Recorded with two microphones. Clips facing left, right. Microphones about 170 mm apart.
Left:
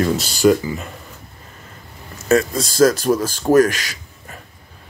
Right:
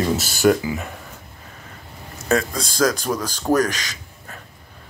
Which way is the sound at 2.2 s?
5° left (ahead or behind).